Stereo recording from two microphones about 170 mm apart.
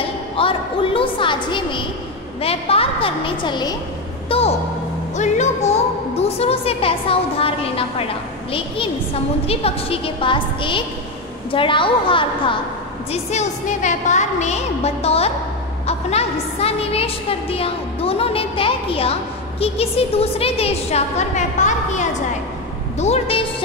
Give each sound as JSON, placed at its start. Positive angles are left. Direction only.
{"t": 0.4, "sound": "a sound", "side_deg": 30}
{"t": 2.4, "sound": "a woman's voice", "side_deg": 35}
{"t": 13.1, "sound": "a woman's voice", "side_deg": 40}